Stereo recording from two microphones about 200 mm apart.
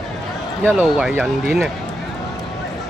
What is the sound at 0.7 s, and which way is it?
Speech, 5° right (ahead or behind).